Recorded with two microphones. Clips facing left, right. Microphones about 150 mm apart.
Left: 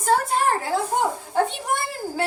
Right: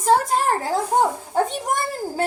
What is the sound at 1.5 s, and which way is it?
Speech, 45° right (ahead or behind).